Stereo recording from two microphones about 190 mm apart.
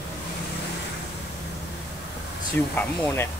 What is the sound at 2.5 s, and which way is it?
Speech, 10° left (ahead or behind).